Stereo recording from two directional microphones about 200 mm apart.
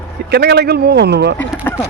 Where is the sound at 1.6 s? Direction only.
15° left (ahead or behind).